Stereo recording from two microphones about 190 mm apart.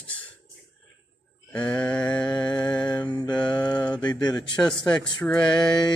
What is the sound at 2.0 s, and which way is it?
Mantra, 25° left (ahead or behind).